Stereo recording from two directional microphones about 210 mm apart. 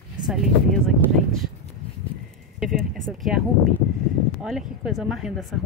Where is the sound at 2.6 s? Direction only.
Centre (ahead or behind).